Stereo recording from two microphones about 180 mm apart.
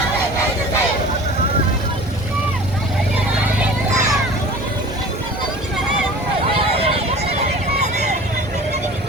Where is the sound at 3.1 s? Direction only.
10° right (ahead or behind).